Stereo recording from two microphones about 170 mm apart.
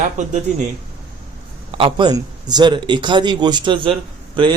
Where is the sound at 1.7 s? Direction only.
30° right (ahead or behind).